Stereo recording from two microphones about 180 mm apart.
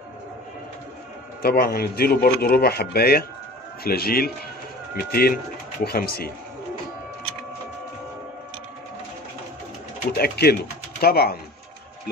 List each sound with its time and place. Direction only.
1.4 s speech: 55° left (ahead or behind)
10.1 s speech: 60° left (ahead or behind)